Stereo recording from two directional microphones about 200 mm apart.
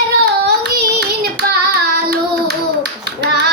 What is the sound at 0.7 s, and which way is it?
Child singing, 55° right (ahead or behind).